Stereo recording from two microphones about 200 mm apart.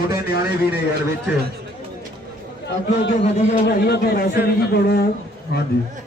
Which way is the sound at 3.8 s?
55° left (ahead or behind).